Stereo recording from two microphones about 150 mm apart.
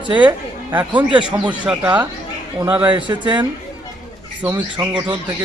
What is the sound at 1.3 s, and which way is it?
Speech, 10° right (ahead or behind).